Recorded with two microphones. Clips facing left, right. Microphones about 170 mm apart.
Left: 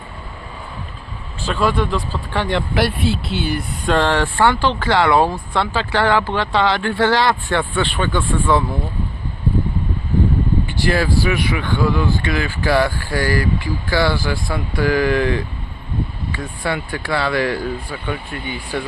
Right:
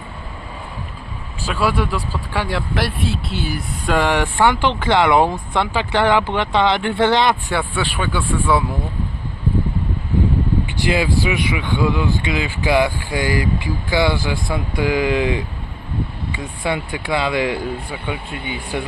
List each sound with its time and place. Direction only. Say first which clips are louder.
1.5 s speech: left 1 dB; 10° right (ahead or behind)
7.5 s speech: left 2 dB; 10° right (ahead or behind)
10.7 s speech: even; 15° right (ahead or behind)